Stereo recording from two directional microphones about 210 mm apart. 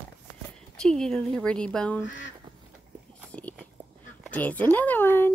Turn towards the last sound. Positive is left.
turn(degrees=10)  # may be behind; listen again after turning